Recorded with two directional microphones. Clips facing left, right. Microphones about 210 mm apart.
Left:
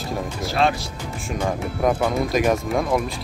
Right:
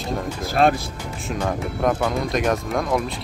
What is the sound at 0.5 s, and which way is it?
Speech, 50° right (ahead or behind).